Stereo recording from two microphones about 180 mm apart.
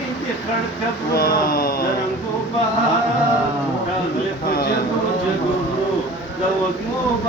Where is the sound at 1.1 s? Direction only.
55° left (ahead or behind).